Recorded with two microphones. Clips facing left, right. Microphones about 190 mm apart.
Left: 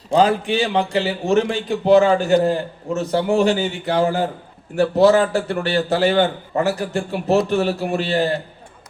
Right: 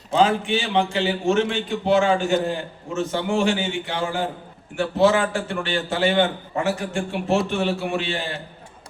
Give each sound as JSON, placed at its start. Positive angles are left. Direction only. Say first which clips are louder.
{"t": 0.1, "sound": "a man's voice", "louder": "left 3 dB", "side_deg": 40}